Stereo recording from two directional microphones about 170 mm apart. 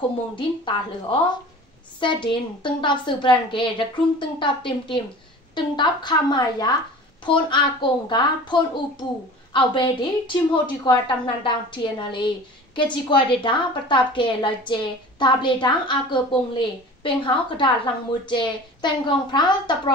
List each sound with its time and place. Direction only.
0.4 s a woman's voice: 30° left (ahead or behind)